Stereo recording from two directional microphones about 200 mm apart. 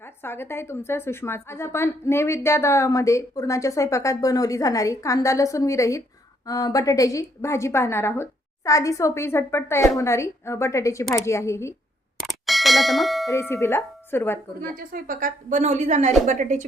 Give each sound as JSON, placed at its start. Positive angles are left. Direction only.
{"t": 0.2, "sound": "a woman's voice", "side_deg": 10}
{"t": 12.2, "sound": "clang", "side_deg": 0}
{"t": 13.3, "sound": "a woman's voice", "side_deg": 15}
{"t": 14.8, "sound": "a woman's voice", "side_deg": -45}